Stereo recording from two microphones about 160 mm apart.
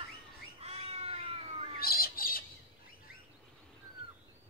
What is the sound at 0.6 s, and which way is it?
Cat, 40° right (ahead or behind).